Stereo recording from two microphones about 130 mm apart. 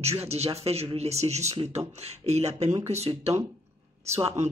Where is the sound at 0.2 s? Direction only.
50° right (ahead or behind).